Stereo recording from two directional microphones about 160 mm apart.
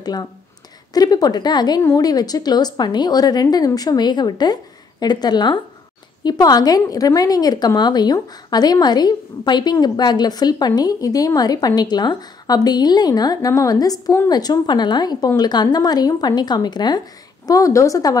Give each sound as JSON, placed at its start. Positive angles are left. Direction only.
{"t": 0.0, "sound": "a woman's voice", "side_deg": 25}